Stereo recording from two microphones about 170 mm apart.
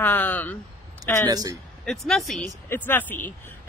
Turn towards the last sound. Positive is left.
turn(degrees=10)  # may be behind; listen again after turning